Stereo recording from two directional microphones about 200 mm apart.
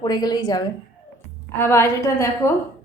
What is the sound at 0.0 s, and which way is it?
A woman's voice, 20° left (ahead or behind).